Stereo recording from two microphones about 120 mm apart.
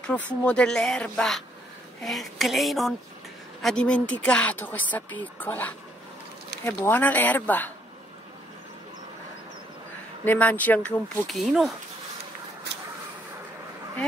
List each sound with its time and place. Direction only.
0.0 s speech: 10° left (ahead or behind)
10.2 s speech: 15° left (ahead or behind); by 11.7 s 5° right (ahead or behind)